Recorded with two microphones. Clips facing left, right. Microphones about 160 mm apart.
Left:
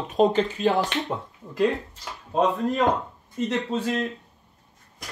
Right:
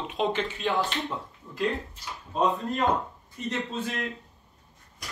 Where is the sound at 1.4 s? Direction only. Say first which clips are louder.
Left 4 dB; 60° left (ahead or behind).